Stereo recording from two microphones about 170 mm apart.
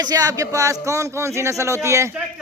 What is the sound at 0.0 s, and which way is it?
A man's voice, 20° right (ahead or behind).